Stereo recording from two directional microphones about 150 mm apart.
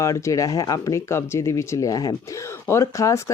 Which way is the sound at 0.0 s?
20° left (ahead or behind).